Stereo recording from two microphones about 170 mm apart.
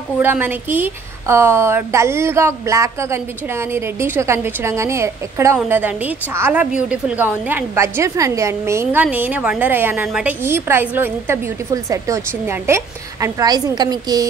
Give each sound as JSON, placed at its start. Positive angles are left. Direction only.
{"t": 0.2, "sound": "a woman's voice", "side_deg": -10}